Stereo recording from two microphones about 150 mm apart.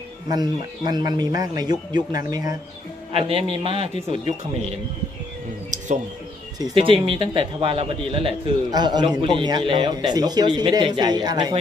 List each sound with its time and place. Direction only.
0.3 s speech: 25° right (ahead or behind)
3.3 s a man's voice: 40° right (ahead or behind)
6.6 s a man's voice: 35° right (ahead or behind)